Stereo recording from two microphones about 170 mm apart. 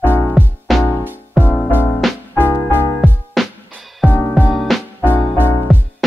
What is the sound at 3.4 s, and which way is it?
Music, centre (ahead or behind).